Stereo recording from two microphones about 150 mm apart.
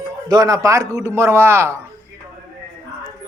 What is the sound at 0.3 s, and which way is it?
A man's voice, 25° right (ahead or behind).